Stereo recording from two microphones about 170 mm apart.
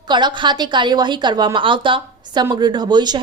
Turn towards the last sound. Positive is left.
turn(degrees=-25)  # may be behind; listen again after turning